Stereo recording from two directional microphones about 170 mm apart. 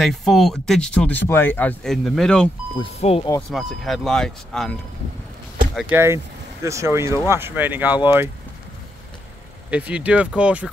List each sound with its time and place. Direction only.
0.0 s speech: centre (ahead or behind)
2.8 s speech: 35° left (ahead or behind)
3.4 s speech: centre (ahead or behind)
5.8 s speech: 10° right (ahead or behind)
9.7 s speech: 5° right (ahead or behind)